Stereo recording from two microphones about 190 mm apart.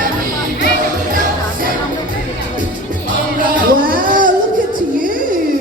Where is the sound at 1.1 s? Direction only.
45° right (ahead or behind).